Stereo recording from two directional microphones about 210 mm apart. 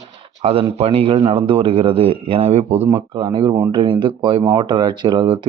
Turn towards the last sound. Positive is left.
turn(degrees=-20)  # may be behind; listen again after turning